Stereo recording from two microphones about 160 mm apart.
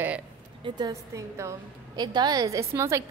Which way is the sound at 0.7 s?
25° right (ahead or behind).